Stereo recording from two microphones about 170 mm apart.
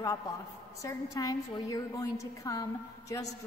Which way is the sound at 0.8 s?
20° left (ahead or behind).